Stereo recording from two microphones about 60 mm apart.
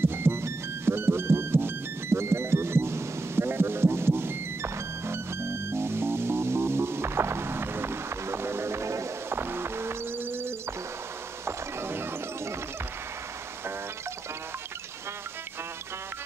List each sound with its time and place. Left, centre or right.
0.0 s music: right
9.4 s music: right